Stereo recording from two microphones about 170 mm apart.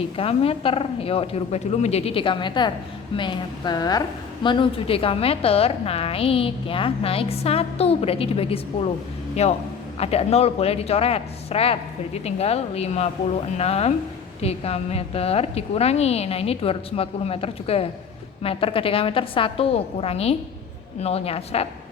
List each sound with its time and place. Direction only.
0.2 s a woman's voice: 35° left (ahead or behind)